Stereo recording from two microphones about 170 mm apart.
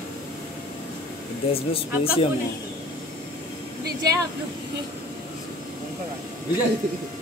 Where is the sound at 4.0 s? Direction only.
20° right (ahead or behind).